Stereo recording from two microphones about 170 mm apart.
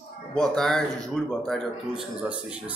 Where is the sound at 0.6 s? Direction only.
Centre (ahead or behind).